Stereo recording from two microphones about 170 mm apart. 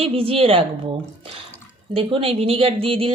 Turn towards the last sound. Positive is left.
turn(degrees=-35)  # may be behind; listen again after turning